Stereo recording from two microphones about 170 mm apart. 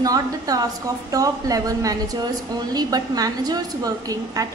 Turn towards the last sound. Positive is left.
turn(degrees=-20)  # may be behind; listen again after turning